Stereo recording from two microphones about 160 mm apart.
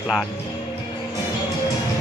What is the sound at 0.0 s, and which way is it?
Speech, 5° right (ahead or behind).